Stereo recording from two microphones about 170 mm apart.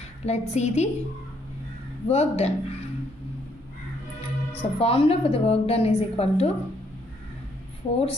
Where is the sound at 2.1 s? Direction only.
40° left (ahead or behind).